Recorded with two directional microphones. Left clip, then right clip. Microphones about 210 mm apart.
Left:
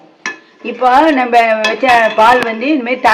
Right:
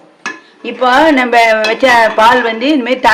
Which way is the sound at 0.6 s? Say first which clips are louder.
Right 1 dB; 60° right (ahead or behind).